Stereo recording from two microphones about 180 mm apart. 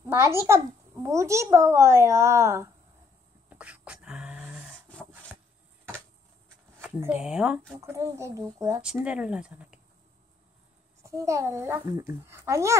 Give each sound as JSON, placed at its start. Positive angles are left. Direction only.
{"t": 0.0, "sound": "a child's voice", "side_deg": -15}
{"t": 3.4, "sound": "a sound", "side_deg": -5}
{"t": 6.8, "sound": "speech", "side_deg": -10}
{"t": 8.8, "sound": "speech", "side_deg": -5}
{"t": 11.0, "sound": "speech", "side_deg": -15}